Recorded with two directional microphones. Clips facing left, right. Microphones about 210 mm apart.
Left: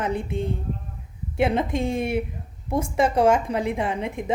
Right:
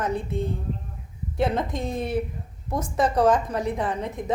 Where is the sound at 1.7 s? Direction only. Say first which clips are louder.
Left 3 dB; 10° left (ahead or behind).